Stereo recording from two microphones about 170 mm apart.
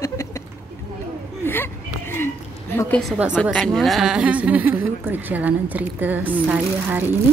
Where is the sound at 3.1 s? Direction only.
5° right (ahead or behind).